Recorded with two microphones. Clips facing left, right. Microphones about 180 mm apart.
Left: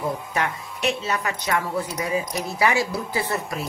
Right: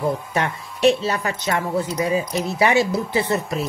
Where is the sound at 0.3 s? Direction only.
30° right (ahead or behind).